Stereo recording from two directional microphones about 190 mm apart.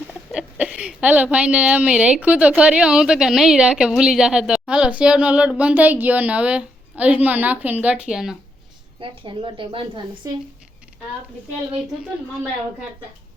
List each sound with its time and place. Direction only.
0.3 s speech: 5° right (ahead or behind)
9.0 s a woman's voice: 25° right (ahead or behind)